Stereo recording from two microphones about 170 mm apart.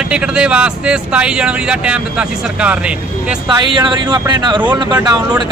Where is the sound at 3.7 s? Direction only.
25° right (ahead or behind).